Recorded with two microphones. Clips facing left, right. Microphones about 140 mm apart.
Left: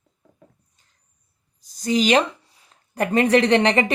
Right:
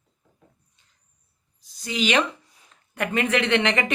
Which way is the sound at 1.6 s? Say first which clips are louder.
Left 6 dB; 40° left (ahead or behind).